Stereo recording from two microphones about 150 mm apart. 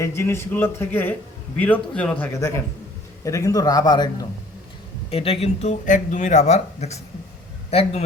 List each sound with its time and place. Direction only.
0.0 s a man's voice: 15° left (ahead or behind)
3.2 s a man's voice: 20° left (ahead or behind)
5.1 s speech: 40° left (ahead or behind)